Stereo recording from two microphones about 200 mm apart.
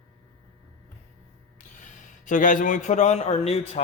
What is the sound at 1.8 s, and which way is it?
Speech, 40° left (ahead or behind).